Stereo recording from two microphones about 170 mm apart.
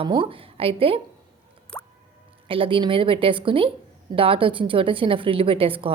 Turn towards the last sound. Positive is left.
turn(degrees=-30)  # may be behind; listen again after turning